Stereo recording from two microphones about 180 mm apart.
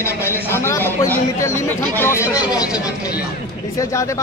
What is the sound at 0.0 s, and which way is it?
Speech, 15° left (ahead or behind).